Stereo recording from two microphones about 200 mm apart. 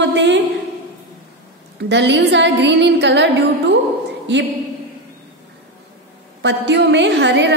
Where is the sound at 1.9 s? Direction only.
60° right (ahead or behind).